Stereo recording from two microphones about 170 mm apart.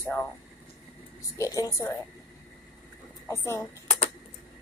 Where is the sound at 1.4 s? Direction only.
20° left (ahead or behind).